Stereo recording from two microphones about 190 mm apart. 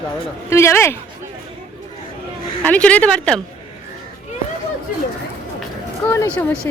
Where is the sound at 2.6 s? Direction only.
5° left (ahead or behind).